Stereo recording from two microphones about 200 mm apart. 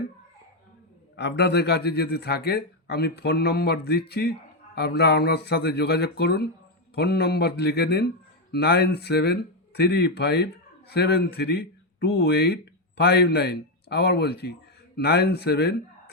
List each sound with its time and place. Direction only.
1.1 s a man's voice: 55° left (ahead or behind)